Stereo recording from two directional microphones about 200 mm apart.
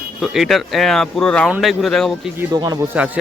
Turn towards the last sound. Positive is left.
turn(degrees=-5)  # may be behind; listen again after turning